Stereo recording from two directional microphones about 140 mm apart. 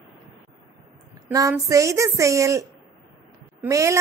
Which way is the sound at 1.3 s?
25° right (ahead or behind).